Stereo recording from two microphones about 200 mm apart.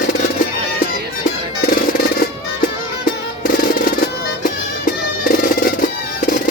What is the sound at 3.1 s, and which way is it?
Music, 45° left (ahead or behind).